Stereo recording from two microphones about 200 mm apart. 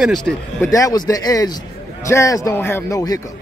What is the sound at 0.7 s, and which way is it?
Speech, 15° left (ahead or behind).